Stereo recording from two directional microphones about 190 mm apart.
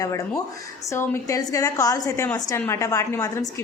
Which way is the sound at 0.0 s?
20° left (ahead or behind).